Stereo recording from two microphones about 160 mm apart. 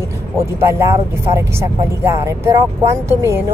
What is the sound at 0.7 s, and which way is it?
Speech, 15° right (ahead or behind).